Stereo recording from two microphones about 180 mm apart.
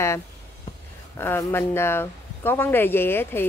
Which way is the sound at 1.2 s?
15° left (ahead or behind).